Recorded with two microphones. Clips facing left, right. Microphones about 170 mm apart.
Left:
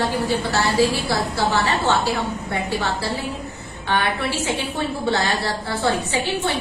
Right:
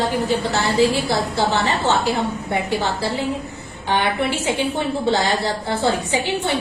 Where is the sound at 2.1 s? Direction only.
20° right (ahead or behind).